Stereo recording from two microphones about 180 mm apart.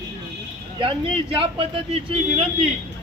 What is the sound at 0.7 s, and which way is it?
Speech, 30° right (ahead or behind).